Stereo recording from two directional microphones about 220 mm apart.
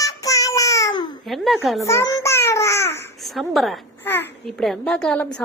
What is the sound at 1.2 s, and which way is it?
Speech, centre (ahead or behind).